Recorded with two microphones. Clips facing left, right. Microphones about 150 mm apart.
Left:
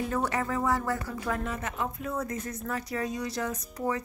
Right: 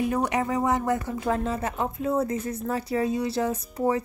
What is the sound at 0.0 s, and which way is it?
Speech, 15° right (ahead or behind).